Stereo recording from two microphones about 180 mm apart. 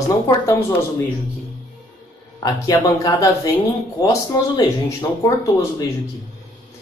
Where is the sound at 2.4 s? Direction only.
20° left (ahead or behind).